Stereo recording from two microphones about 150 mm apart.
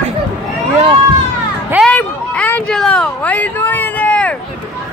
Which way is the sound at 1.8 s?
10° left (ahead or behind).